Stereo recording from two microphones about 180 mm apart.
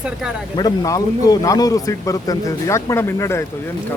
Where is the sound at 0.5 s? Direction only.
20° left (ahead or behind).